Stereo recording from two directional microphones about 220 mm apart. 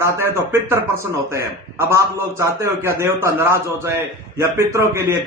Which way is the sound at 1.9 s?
15° right (ahead or behind).